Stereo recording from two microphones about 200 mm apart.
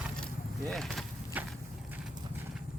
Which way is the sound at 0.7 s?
Centre (ahead or behind).